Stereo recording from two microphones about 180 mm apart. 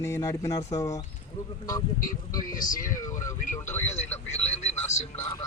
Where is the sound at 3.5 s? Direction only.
15° left (ahead or behind).